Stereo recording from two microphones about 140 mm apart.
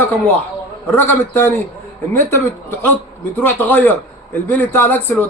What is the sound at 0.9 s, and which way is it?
Speech, 15° left (ahead or behind).